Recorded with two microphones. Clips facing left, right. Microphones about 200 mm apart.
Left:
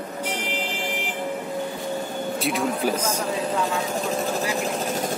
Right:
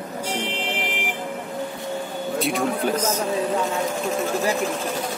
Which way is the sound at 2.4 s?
Centre (ahead or behind).